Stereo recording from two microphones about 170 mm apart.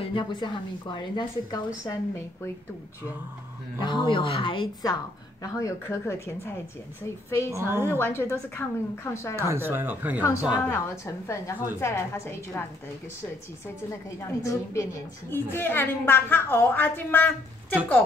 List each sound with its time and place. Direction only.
0.0 s a woman's voice: 30° left (ahead or behind)
1.9 s a woman's voice: 15° left (ahead or behind)
3.8 s a woman's voice: 25° left (ahead or behind)
7.5 s speech: 15° right (ahead or behind)
8.0 s a woman's voice: 15° left (ahead or behind)
9.4 s speech: 15° right (ahead or behind)
10.7 s a woman's voice: 15° left (ahead or behind)
14.2 s a woman's voice: 15° left (ahead or behind)